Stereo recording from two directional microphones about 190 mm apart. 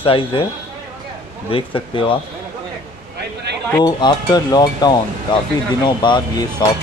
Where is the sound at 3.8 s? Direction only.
20° left (ahead or behind).